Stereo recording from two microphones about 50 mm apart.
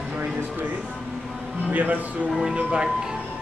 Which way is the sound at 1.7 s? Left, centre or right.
Right.